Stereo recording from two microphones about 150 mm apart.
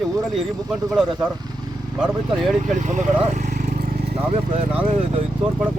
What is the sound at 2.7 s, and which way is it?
Speech, 55° right (ahead or behind).